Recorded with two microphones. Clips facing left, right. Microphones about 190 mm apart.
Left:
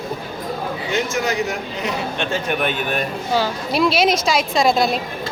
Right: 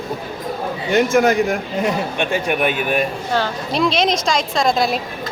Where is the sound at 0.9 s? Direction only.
55° right (ahead or behind).